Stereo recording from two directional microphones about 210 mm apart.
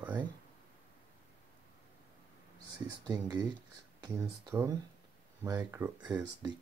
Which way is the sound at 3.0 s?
20° right (ahead or behind).